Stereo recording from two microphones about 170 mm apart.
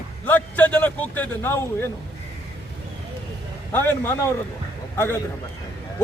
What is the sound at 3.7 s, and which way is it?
A man's voice, 15° left (ahead or behind).